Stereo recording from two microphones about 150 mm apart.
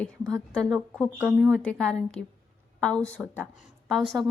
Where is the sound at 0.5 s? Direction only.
5° left (ahead or behind).